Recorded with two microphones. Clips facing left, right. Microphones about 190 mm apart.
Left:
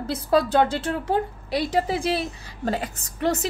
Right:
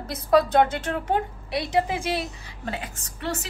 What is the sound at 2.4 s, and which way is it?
Speech, 40° left (ahead or behind).